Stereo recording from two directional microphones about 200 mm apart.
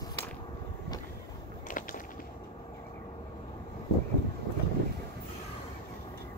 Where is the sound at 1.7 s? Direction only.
40° left (ahead or behind).